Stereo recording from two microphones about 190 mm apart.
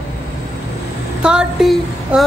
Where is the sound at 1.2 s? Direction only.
Centre (ahead or behind).